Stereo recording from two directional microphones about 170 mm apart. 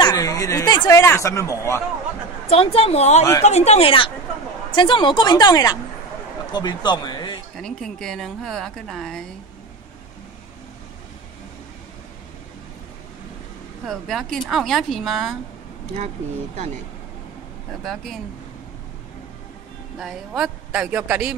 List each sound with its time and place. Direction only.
0.0 s speech: 20° left (ahead or behind)
2.5 s a woman's voice: 35° left (ahead or behind)
7.5 s speech: centre (ahead or behind)
13.8 s speech: centre (ahead or behind)
17.8 s speech: centre (ahead or behind)
20.0 s speech: centre (ahead or behind)